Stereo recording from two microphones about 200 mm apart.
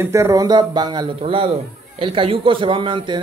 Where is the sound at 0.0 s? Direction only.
15° right (ahead or behind).